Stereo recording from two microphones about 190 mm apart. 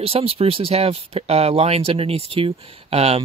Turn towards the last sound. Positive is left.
turn(degrees=-30)  # may be behind; listen again after turning